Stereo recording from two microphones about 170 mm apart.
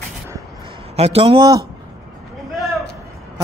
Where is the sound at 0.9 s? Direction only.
35° right (ahead or behind).